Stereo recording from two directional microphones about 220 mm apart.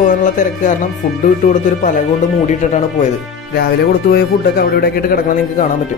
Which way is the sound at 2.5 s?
35° left (ahead or behind).